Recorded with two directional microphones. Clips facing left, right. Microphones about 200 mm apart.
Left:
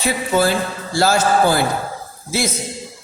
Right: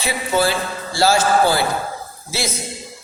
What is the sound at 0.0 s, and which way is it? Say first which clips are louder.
A man's voice: left 2 dB; 45° left (ahead or behind).